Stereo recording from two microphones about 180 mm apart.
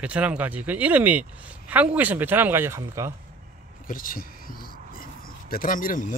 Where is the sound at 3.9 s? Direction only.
50° left (ahead or behind).